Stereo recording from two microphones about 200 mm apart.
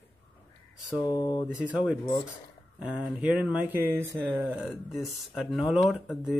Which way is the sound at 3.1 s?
5° right (ahead or behind).